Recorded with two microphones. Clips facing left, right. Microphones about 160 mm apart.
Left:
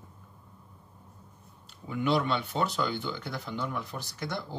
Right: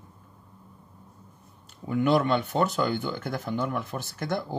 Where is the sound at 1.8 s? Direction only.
50° right (ahead or behind).